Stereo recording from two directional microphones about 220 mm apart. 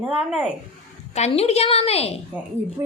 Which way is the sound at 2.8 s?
15° right (ahead or behind).